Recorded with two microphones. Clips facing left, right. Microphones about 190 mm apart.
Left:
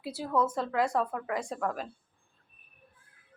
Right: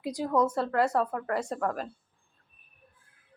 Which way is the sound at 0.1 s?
15° right (ahead or behind).